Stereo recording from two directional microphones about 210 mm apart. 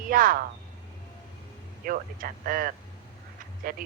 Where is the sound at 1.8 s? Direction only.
40° right (ahead or behind).